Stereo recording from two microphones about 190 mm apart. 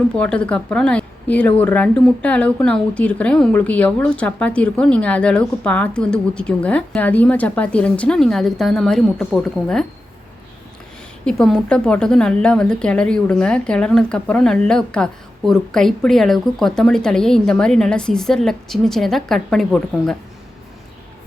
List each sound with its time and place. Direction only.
0.2 s speech: 5° left (ahead or behind)
11.3 s a woman's voice: 5° left (ahead or behind)